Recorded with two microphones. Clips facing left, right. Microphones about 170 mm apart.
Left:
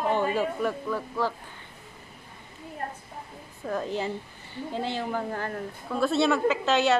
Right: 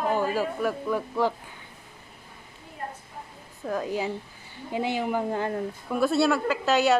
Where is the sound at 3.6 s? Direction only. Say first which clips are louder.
Right 1 dB; 5° right (ahead or behind).